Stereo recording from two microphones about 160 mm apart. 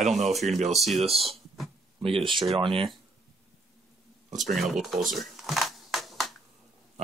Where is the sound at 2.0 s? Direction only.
35° right (ahead or behind).